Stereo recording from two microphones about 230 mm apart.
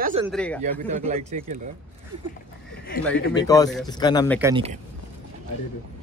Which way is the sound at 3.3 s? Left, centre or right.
Centre.